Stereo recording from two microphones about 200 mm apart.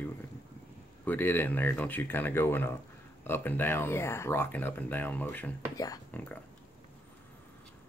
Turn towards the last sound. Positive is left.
turn(degrees=15)  # may be behind; listen again after turning